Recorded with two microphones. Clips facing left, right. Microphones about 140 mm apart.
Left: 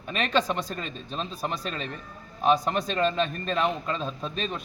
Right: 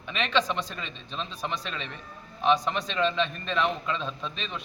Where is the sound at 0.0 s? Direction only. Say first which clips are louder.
Left 1 dB; 45° left (ahead or behind).